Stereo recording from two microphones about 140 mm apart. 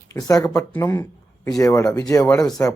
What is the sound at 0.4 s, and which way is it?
Speech, 5° left (ahead or behind).